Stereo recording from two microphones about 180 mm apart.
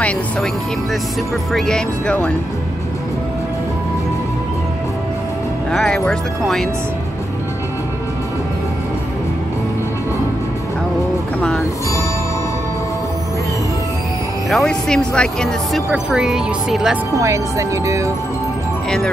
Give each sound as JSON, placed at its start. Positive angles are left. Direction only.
{"t": 1.5, "sound": "speech", "side_deg": 5}
{"t": 5.7, "sound": "speech", "side_deg": 5}
{"t": 14.5, "sound": "speech", "side_deg": 5}
{"t": 17.2, "sound": "speech", "side_deg": -15}